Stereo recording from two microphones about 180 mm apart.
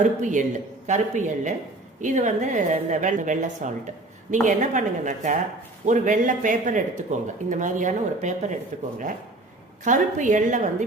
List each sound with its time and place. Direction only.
0.0 s a woman's voice: 45° right (ahead or behind)
9.8 s a woman's voice: 45° right (ahead or behind)